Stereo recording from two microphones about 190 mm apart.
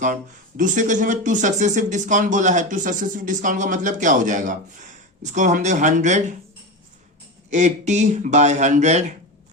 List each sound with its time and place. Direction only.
0.0 s speech: 45° right (ahead or behind)
7.5 s speech: 35° right (ahead or behind)